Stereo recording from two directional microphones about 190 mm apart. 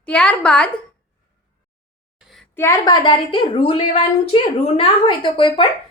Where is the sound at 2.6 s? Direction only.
20° left (ahead or behind).